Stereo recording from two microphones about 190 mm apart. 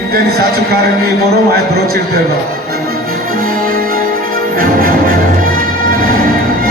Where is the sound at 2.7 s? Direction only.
50° right (ahead or behind).